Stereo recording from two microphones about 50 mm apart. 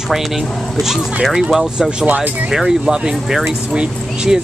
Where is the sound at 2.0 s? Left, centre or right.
Right.